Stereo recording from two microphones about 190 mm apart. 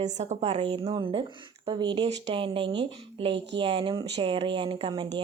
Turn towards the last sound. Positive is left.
turn(degrees=-25)  # may be behind; listen again after turning